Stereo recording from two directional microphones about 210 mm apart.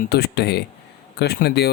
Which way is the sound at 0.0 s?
50° left (ahead or behind).